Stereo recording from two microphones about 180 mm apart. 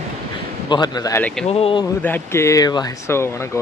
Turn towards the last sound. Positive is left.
turn(degrees=20)  # may be behind; listen again after turning